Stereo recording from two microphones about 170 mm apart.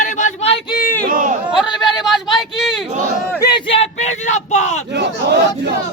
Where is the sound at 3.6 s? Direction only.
35° left (ahead or behind).